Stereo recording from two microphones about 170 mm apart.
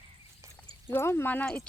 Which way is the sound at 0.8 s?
15° left (ahead or behind).